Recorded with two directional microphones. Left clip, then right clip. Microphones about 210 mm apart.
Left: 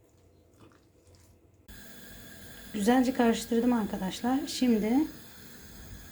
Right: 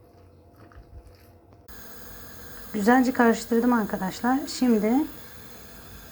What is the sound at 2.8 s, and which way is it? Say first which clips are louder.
A woman's voice: right 6 dB; 20° right (ahead or behind).